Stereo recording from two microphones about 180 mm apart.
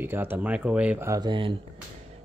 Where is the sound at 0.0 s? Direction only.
10° right (ahead or behind).